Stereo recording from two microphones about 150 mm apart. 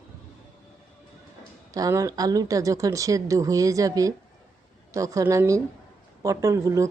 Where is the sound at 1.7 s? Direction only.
20° right (ahead or behind).